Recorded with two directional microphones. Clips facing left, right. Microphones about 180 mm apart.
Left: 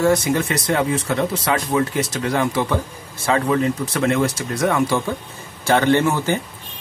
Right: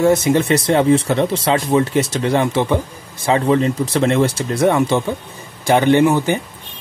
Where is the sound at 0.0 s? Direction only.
20° right (ahead or behind).